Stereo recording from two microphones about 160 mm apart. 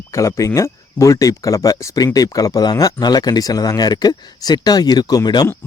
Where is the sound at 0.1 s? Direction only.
20° left (ahead or behind).